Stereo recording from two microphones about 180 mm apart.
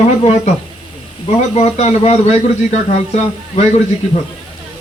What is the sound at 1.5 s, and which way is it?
Speech, 35° left (ahead or behind).